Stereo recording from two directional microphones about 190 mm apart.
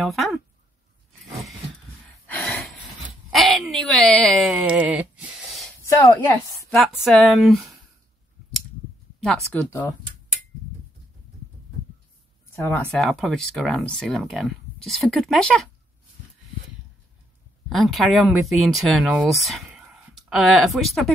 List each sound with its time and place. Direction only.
0.0 s speech: centre (ahead or behind)
2.2 s a sound: 5° left (ahead or behind)
5.9 s a woman's voice: 15° left (ahead or behind)
7.0 s speech: centre (ahead or behind)
9.2 s speech: 5° left (ahead or behind)
12.5 s speech: 10° left (ahead or behind)
17.6 s speech: centre (ahead or behind)